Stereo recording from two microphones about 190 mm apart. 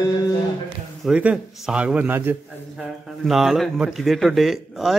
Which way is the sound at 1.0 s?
5° right (ahead or behind).